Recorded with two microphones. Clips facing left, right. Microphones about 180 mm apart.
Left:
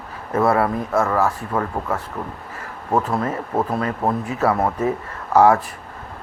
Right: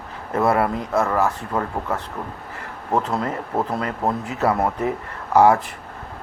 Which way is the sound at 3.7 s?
20° left (ahead or behind).